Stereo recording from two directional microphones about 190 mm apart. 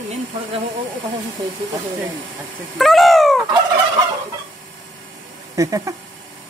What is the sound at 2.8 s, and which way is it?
Speech, centre (ahead or behind).